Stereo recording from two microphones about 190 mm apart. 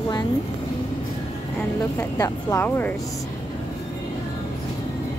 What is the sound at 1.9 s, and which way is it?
Speech, 15° left (ahead or behind).